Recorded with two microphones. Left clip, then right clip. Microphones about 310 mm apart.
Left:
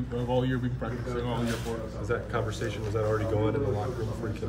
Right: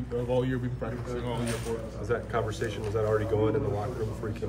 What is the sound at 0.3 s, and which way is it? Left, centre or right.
Speech, centre.